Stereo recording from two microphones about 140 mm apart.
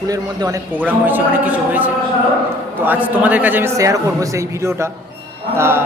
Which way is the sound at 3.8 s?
25° right (ahead or behind).